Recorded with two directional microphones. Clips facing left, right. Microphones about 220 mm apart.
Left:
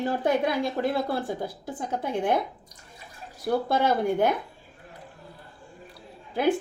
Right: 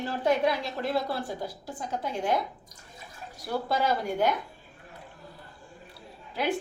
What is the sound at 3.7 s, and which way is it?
Speech, 55° left (ahead or behind).